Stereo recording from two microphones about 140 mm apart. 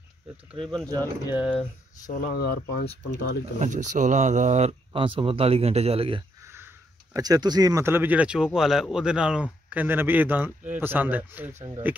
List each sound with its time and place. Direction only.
0.7 s speech: 5° left (ahead or behind)
2.0 s speech: 85° left
3.1 s speech: 60° right (ahead or behind); by 6.2 s 40° right (ahead or behind)
6.4 s sniff: 15° right (ahead or behind)
7.2 s speech: 30° right (ahead or behind); by 12.0 s 10° right (ahead or behind)